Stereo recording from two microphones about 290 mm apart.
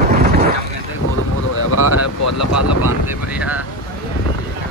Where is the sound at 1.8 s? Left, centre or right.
Left.